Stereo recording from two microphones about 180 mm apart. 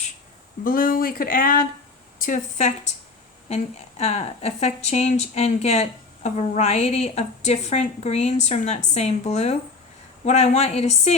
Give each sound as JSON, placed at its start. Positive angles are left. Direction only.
{"t": 0.6, "sound": "speech", "side_deg": 55}